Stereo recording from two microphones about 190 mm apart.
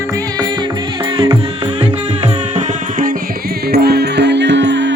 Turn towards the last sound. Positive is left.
turn(degrees=-70)  # may be behind; listen again after turning